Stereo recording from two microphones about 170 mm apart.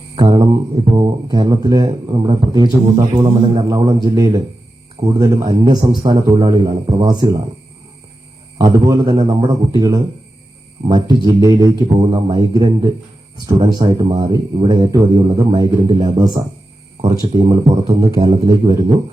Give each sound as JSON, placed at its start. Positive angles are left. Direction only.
{"t": 0.2, "sound": "a man's voice", "side_deg": -25}
{"t": 2.1, "sound": "a man's voice", "side_deg": -35}
{"t": 8.9, "sound": "a man's voice", "side_deg": -25}
{"t": 17.0, "sound": "a man's voice", "side_deg": -35}